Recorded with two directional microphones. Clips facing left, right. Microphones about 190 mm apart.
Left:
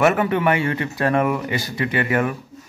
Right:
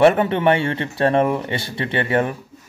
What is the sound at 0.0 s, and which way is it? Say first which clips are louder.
Speech: right 3 dB; 30° right (ahead or behind).